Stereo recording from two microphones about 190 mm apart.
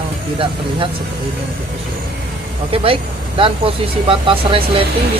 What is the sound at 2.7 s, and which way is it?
Speech, 30° right (ahead or behind).